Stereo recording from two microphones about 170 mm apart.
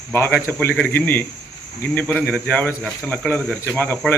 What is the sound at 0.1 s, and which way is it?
Speech, 10° left (ahead or behind).